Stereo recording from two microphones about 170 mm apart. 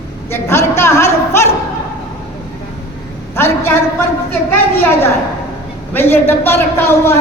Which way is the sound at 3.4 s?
15° left (ahead or behind).